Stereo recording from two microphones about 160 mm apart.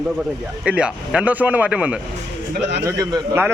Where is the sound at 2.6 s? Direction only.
90° right.